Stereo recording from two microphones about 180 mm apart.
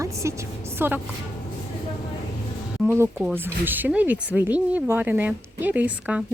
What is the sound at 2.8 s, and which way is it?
Speech, 10° right (ahead or behind).